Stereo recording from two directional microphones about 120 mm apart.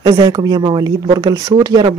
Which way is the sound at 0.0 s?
35° right (ahead or behind).